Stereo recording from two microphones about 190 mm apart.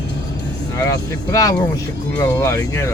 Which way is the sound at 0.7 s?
15° left (ahead or behind).